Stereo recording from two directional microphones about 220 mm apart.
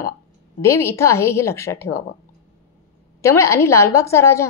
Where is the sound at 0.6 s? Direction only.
10° left (ahead or behind).